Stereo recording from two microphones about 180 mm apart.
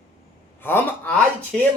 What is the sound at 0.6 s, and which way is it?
Speech, 10° left (ahead or behind).